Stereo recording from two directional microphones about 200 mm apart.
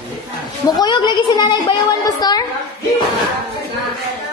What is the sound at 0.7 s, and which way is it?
A woman's voice, 20° left (ahead or behind).